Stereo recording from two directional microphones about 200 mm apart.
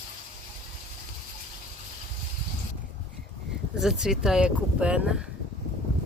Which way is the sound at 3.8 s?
Centre (ahead or behind).